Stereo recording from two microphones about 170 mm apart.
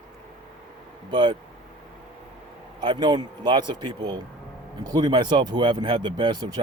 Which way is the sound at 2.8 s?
25° right (ahead or behind).